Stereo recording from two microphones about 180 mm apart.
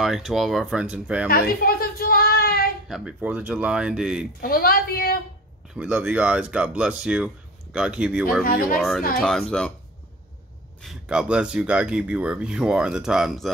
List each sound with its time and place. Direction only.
0.0 s speech: centre (ahead or behind)
1.3 s a sound: 55° left (ahead or behind)
2.9 s speech: 5° right (ahead or behind)
4.4 s a woman's voice: 55° left (ahead or behind)
5.8 s speech: 5° right (ahead or behind)
8.5 s speech: 55° left (ahead or behind)
8.7 s speech: centre (ahead or behind)
10.8 s speech: 5° right (ahead or behind)